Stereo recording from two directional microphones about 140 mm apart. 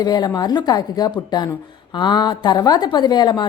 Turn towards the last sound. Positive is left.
turn(degrees=30)  # may be behind; listen again after turning